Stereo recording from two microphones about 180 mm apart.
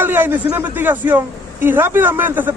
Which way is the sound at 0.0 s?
10° right (ahead or behind).